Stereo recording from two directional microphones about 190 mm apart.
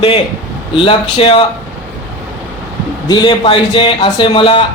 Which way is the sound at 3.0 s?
25° left (ahead or behind).